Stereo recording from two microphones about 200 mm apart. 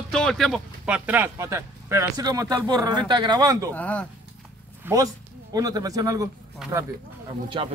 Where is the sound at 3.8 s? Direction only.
5° left (ahead or behind).